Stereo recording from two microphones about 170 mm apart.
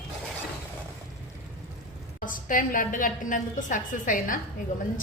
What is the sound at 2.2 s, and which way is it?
A woman's voice, 50° left (ahead or behind).